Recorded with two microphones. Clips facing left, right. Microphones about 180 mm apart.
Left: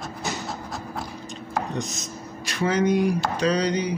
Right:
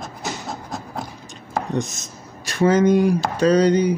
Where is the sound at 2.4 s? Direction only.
45° right (ahead or behind).